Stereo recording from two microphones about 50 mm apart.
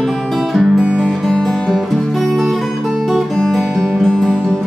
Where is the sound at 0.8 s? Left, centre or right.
Centre.